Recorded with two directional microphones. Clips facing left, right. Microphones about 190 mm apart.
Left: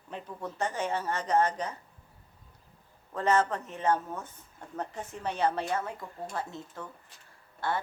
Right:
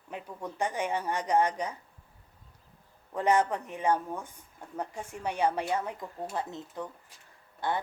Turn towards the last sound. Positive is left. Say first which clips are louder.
# right 1 dB
turn(degrees=-15)  # may be behind; listen again after turning